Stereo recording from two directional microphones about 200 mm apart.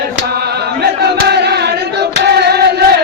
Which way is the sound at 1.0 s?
55° right (ahead or behind).